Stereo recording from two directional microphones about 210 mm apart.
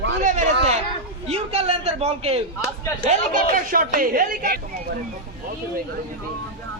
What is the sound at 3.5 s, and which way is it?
Speech, 40° right (ahead or behind).